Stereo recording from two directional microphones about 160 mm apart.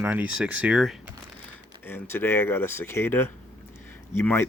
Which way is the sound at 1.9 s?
15° left (ahead or behind).